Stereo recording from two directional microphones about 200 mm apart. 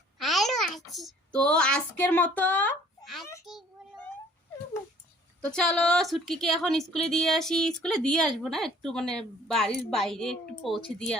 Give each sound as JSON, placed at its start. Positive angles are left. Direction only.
{"t": 0.2, "sound": "a child's voice", "side_deg": 0}
{"t": 3.0, "sound": "a sound", "side_deg": 0}
{"t": 5.5, "sound": "a woman's voice", "side_deg": 5}